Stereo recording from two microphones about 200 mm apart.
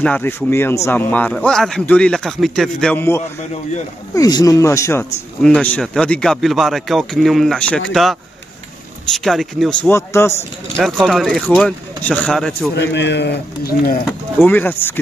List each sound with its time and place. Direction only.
0.0 s speech: 10° left (ahead or behind)
10.8 s speech: centre (ahead or behind)
12.7 s speech: 60° left (ahead or behind)
14.4 s speech: 10° left (ahead or behind)